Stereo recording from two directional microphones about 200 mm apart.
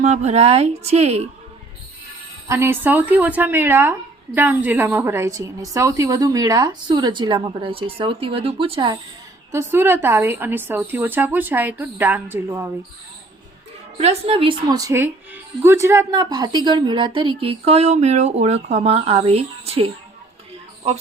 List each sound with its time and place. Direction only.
0.0 s speech: 35° right (ahead or behind)
2.5 s a woman's voice: 10° right (ahead or behind)
9.5 s a woman's voice: 10° right (ahead or behind)
14.0 s speech: 30° right (ahead or behind)